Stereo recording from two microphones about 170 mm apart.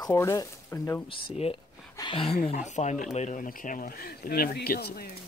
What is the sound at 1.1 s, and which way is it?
Speech, 35° left (ahead or behind).